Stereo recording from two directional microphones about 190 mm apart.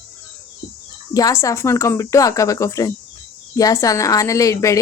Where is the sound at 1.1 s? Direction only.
15° left (ahead or behind).